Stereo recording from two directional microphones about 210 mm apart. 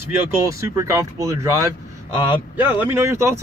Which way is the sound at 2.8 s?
10° right (ahead or behind).